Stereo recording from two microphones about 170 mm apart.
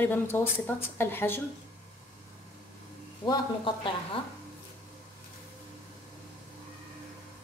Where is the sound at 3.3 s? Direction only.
30° left (ahead or behind).